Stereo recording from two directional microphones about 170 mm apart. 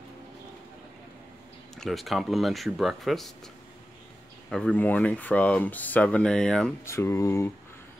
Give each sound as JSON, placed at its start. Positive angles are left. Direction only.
{"t": 1.8, "sound": "speech", "side_deg": 0}
{"t": 4.5, "sound": "speech", "side_deg": 5}
{"t": 6.8, "sound": "speech", "side_deg": 15}